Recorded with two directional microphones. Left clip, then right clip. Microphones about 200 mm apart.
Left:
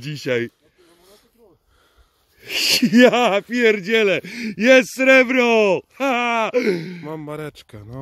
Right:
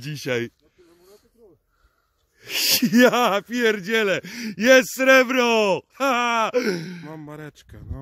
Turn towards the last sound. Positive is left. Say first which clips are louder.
# left 7 dB
turn(degrees=40)  # may be behind; listen again after turning